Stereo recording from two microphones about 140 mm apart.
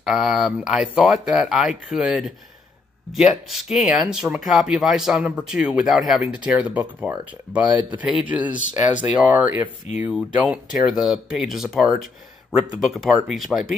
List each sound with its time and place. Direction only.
0.0 s speech: 5° right (ahead or behind)